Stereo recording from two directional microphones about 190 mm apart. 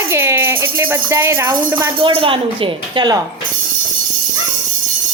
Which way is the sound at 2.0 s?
30° right (ahead or behind).